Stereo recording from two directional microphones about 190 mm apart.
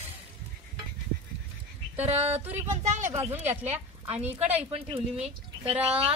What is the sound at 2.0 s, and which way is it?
Speech, 35° right (ahead or behind).